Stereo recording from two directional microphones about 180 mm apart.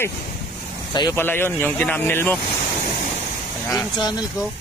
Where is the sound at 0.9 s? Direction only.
25° left (ahead or behind).